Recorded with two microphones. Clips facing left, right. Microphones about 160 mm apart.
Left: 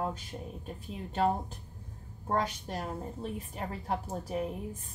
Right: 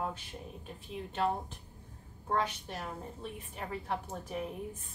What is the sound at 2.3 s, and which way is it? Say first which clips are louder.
A woman's voice: left 2 dB; 40° left (ahead or behind).